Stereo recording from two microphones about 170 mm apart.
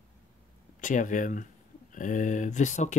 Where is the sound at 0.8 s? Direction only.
50° left (ahead or behind).